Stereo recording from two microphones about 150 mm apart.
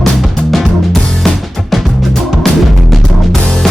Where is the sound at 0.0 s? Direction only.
Centre (ahead or behind).